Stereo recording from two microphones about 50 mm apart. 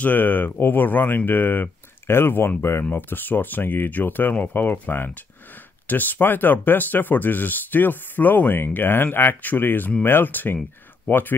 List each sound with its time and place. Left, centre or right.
0.0 s speech: left
2.0 s speech: left